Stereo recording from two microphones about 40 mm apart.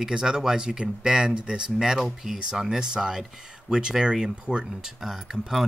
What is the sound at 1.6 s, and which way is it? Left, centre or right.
Speech, centre.